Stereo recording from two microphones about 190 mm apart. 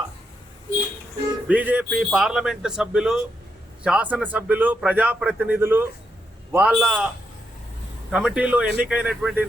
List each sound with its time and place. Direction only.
1.5 s a man's voice: 10° right (ahead or behind)
8.1 s a man's voice: 5° right (ahead or behind)